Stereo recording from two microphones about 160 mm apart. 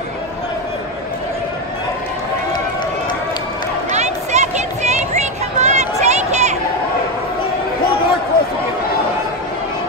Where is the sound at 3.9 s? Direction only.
45° right (ahead or behind).